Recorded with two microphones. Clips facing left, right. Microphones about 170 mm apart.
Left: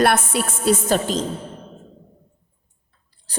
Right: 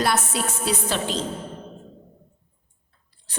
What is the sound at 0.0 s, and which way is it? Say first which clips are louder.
A woman's voice: left 5 dB; 55° left (ahead or behind).